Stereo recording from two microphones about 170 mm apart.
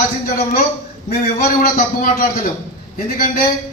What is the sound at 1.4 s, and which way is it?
A man's voice, 60° left (ahead or behind).